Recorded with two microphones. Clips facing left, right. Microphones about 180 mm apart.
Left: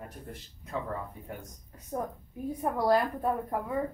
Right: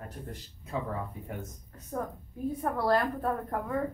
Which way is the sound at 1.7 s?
15° left (ahead or behind).